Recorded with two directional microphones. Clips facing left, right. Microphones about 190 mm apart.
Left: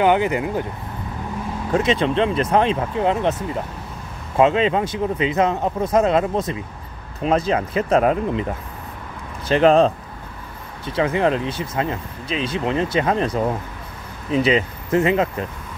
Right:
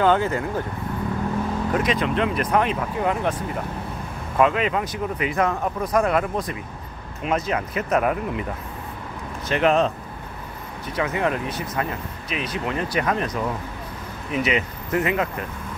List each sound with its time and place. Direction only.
0.0 s speech: 15° left (ahead or behind)
1.7 s speech: 25° left (ahead or behind)
9.5 s speech: 30° left (ahead or behind)